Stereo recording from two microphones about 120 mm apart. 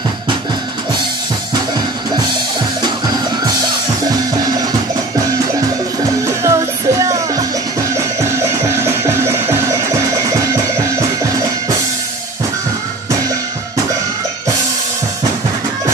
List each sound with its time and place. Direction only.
6.4 s music: 25° right (ahead or behind)
8.6 s music: 20° right (ahead or behind)